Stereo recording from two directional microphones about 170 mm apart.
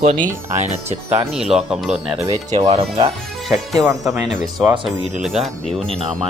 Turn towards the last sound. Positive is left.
turn(degrees=0)  # may be behind; listen again after turning